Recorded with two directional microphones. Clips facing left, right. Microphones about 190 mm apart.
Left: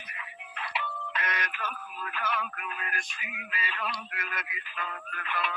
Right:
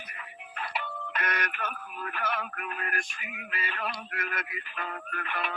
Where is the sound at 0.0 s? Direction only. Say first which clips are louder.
Right 1 dB; 45° right (ahead or behind).